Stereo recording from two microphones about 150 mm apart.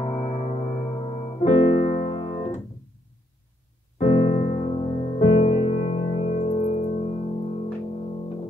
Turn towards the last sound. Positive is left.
turn(degrees=45)  # may be behind; listen again after turning